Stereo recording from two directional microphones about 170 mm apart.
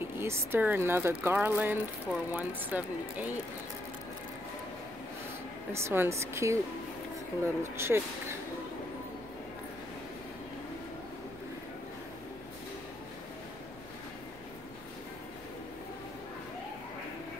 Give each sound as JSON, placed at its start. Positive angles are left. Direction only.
{"t": 0.0, "sound": "speech", "side_deg": -15}
{"t": 5.7, "sound": "speech", "side_deg": -15}